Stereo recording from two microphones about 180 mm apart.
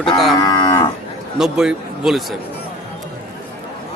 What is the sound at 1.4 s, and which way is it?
A man's voice, 5° right (ahead or behind).